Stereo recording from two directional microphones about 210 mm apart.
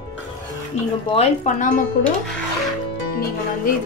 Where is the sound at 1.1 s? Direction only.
30° left (ahead or behind).